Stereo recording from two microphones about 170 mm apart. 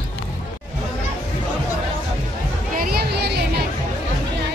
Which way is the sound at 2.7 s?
60° right (ahead or behind).